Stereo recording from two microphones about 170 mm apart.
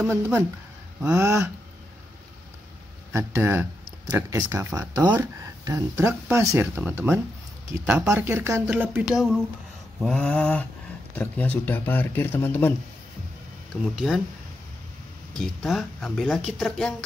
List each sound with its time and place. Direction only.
0.0 s speech: 10° right (ahead or behind)
3.1 s speech: 15° right (ahead or behind)
9.1 s speech: centre (ahead or behind)
13.9 s speech: centre (ahead or behind)
15.3 s speech: centre (ahead or behind)